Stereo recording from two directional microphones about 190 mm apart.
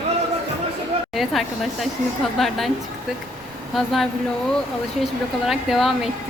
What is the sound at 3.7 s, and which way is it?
A woman's voice, centre (ahead or behind).